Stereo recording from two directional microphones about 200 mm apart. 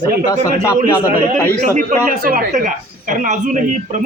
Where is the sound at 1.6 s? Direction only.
40° right (ahead or behind).